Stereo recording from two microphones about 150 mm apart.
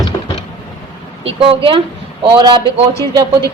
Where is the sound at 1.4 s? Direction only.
35° right (ahead or behind).